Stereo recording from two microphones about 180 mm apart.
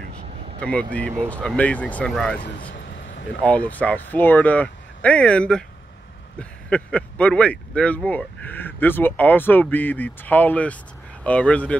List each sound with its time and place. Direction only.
0.6 s speech: 5° left (ahead or behind)
2.7 s vehicle: 90° left
3.3 s speech: 5° left (ahead or behind)
6.7 s speech: 5° left (ahead or behind)